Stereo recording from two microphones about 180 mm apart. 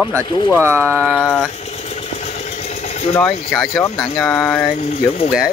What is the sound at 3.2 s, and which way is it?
Speech, 10° left (ahead or behind).